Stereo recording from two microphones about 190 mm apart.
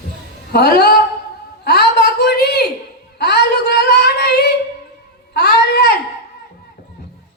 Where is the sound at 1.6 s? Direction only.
60° left (ahead or behind).